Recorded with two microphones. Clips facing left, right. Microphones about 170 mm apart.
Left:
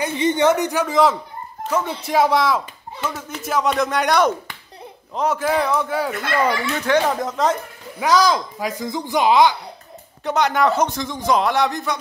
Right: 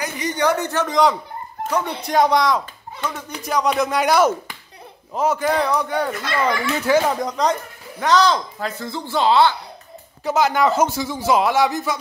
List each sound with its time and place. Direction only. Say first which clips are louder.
0.0 s speech: left 4 dB; 25° left (ahead or behind)
10.2 s speech: right 1 dB; 5° right (ahead or behind)